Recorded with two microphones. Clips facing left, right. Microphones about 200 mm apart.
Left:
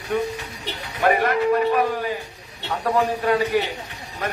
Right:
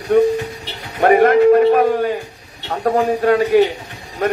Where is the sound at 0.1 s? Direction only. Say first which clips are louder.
Right 11 dB; 55° right (ahead or behind).